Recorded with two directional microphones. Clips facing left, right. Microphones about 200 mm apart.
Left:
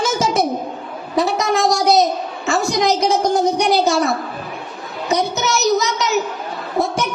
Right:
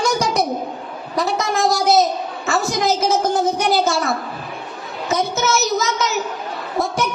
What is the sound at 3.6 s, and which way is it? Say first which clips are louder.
Speech: left 3 dB; centre (ahead or behind).